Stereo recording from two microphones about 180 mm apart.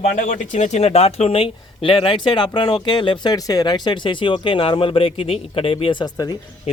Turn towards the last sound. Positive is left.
turn(degrees=20)  # may be behind; listen again after turning